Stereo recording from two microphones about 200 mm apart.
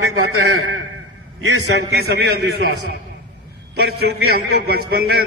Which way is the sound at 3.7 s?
55° right (ahead or behind).